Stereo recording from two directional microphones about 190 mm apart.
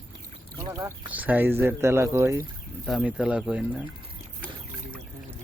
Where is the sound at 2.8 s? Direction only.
Centre (ahead or behind).